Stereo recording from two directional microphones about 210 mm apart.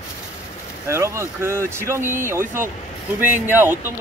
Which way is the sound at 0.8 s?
15° right (ahead or behind).